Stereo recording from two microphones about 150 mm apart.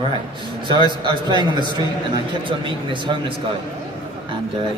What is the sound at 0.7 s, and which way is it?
A man's voice, 30° right (ahead or behind).